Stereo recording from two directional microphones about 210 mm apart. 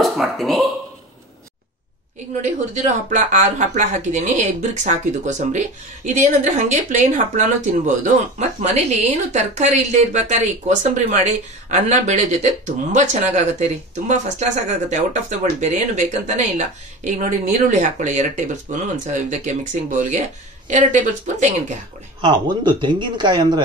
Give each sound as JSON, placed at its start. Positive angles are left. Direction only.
{"t": 0.0, "sound": "speech", "side_deg": 0}
{"t": 2.7, "sound": "speech", "side_deg": -35}
{"t": 22.2, "sound": "speech", "side_deg": -20}